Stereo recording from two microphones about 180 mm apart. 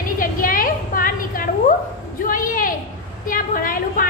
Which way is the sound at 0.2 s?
50° left (ahead or behind).